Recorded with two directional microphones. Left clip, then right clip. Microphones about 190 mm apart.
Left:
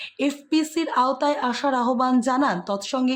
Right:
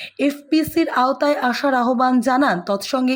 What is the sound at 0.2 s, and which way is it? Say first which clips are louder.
A woman's voice: right 4 dB; 10° right (ahead or behind).